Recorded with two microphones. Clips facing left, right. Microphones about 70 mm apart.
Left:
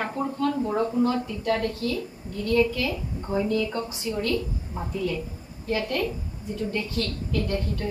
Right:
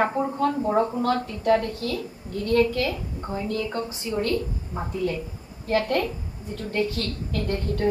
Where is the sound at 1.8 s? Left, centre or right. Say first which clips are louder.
Even; right.